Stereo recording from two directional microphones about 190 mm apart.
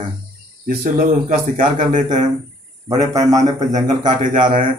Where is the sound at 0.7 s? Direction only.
50° right (ahead or behind).